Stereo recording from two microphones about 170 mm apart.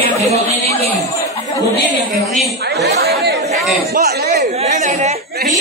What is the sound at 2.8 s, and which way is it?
Speech, 75° right (ahead or behind).